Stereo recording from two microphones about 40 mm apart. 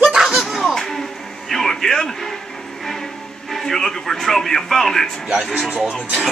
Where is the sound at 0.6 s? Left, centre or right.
Centre.